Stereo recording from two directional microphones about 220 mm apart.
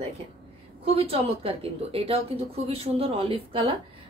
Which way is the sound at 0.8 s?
25° right (ahead or behind).